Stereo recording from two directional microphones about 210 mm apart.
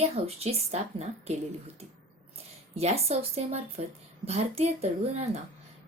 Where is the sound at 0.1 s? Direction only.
30° right (ahead or behind).